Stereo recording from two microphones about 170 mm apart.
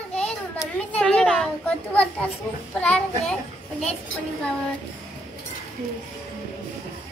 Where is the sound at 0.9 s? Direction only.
5° left (ahead or behind).